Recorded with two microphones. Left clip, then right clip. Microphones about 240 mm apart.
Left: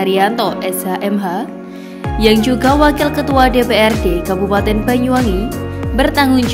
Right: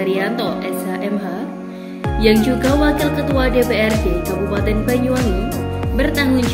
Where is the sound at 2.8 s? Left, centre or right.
Left.